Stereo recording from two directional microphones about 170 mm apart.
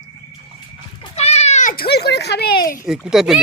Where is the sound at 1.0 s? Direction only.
40° left (ahead or behind); by 2.8 s 55° left (ahead or behind).